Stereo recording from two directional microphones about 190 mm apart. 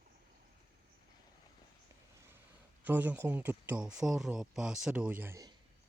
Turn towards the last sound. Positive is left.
turn(degrees=-15)  # may be behind; listen again after turning